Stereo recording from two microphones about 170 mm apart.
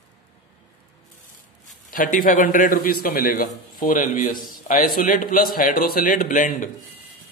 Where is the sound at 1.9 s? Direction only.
55° left (ahead or behind).